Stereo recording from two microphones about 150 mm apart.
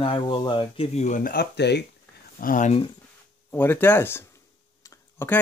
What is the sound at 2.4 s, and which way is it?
Speech, 65° left (ahead or behind).